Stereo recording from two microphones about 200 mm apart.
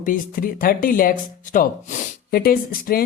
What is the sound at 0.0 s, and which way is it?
Speech, 45° left (ahead or behind).